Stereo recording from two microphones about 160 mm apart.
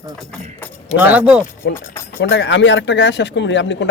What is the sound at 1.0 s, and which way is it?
Speech, 10° right (ahead or behind).